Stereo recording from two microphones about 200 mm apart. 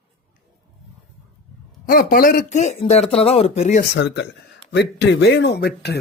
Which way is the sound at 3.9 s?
60° left (ahead or behind).